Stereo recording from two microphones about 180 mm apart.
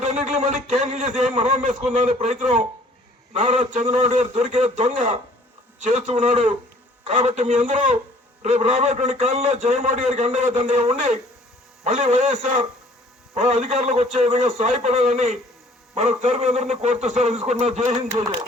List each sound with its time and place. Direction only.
0.0 s a man's voice: 40° right (ahead or behind)